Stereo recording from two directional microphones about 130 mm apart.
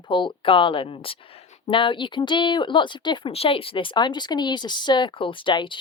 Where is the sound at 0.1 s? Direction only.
40° left (ahead or behind).